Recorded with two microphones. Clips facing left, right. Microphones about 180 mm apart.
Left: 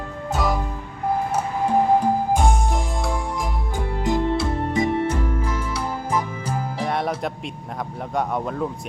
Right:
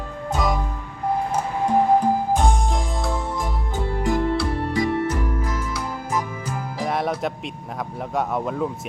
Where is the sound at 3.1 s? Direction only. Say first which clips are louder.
Even; 15° left (ahead or behind); by 6.8 s 30° left (ahead or behind).